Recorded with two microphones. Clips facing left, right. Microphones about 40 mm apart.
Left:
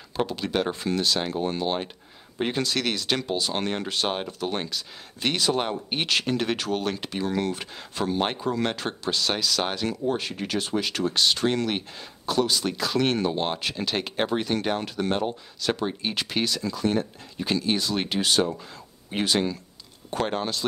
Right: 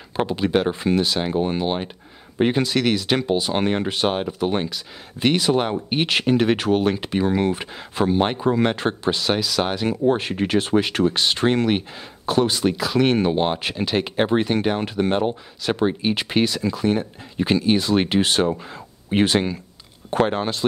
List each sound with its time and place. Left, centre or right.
0.1 s speech: right
9.8 s speech: right
12.7 s speech: centre